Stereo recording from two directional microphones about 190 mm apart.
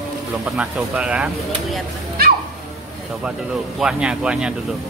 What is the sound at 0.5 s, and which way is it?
Speech, 5° right (ahead or behind).